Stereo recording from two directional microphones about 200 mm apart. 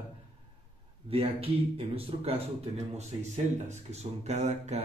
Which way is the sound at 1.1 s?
30° right (ahead or behind).